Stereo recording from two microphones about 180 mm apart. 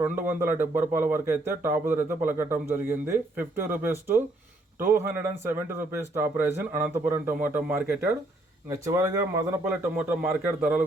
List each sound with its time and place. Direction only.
0.0 s a man's voice: 10° right (ahead or behind)